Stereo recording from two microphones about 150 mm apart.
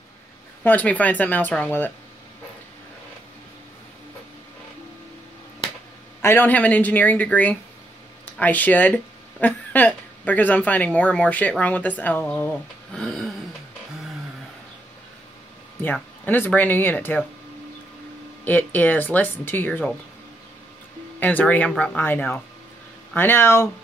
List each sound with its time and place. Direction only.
0.7 s speech: 10° left (ahead or behind)
6.2 s speech: 10° left (ahead or behind)
15.8 s speech: 15° left (ahead or behind)
18.4 s speech: 10° left (ahead or behind)
21.2 s speech: 10° left (ahead or behind)